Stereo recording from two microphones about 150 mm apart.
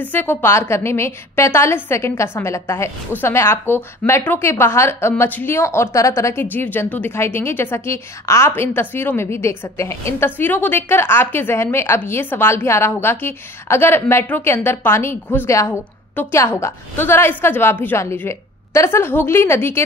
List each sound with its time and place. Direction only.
0.0 s a woman's voice: 15° left (ahead or behind)